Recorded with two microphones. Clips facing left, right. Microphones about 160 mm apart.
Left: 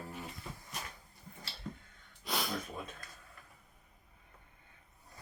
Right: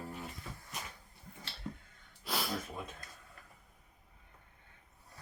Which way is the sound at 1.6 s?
10° right (ahead or behind).